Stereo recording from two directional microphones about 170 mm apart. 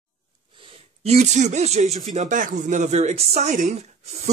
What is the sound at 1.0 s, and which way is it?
Speech, 40° right (ahead or behind).